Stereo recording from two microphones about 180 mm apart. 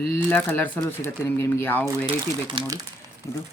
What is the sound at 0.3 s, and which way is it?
Speech, 10° left (ahead or behind).